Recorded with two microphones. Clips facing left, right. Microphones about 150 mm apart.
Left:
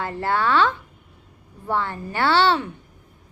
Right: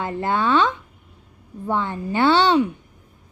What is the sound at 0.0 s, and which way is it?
A woman's voice, 20° right (ahead or behind).